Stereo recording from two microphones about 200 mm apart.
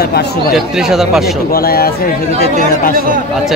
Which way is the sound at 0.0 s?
50° left (ahead or behind).